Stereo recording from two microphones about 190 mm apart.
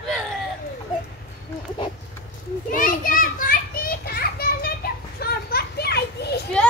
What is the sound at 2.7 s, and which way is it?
Children playing, 45° left (ahead or behind).